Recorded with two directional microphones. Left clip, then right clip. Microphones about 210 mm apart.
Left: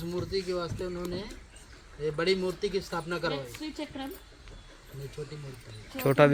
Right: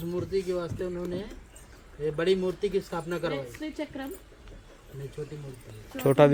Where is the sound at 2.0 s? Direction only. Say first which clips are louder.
Right 2 dB; 15° right (ahead or behind).